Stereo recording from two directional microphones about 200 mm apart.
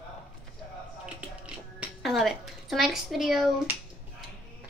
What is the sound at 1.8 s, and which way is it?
Speech, centre (ahead or behind).